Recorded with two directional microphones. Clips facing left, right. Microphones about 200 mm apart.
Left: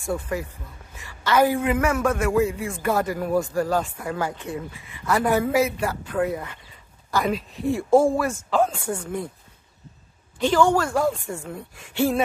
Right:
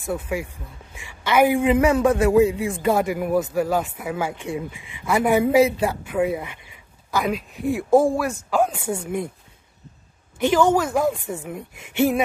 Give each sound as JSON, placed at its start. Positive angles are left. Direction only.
{"t": 0.3, "sound": "a man's voice", "side_deg": -10}
{"t": 7.1, "sound": "speech", "side_deg": 0}
{"t": 8.5, "sound": "a man's voice", "side_deg": -10}
{"t": 10.4, "sound": "a man's voice", "side_deg": -20}